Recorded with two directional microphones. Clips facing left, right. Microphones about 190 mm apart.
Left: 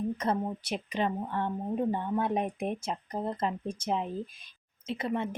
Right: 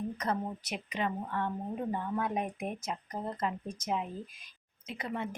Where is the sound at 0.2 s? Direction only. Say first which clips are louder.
Left 4 dB; 30° left (ahead or behind).